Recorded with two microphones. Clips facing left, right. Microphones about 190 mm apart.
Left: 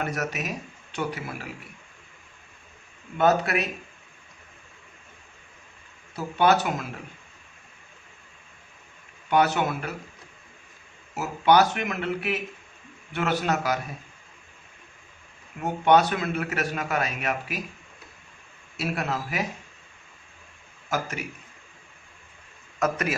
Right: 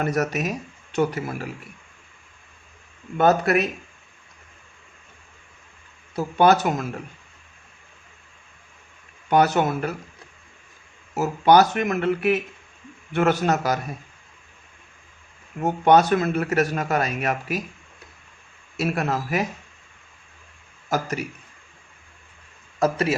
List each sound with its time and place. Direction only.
0.0 s speech: 40° right (ahead or behind)
3.2 s speech: 45° right (ahead or behind)
6.1 s speech: 40° right (ahead or behind)
9.3 s speech: 40° right (ahead or behind)
11.1 s speech: 40° right (ahead or behind)
15.8 s speech: 40° right (ahead or behind)
18.8 s speech: 45° right (ahead or behind)
20.9 s speech: 40° right (ahead or behind)
22.8 s a man's voice: 30° right (ahead or behind)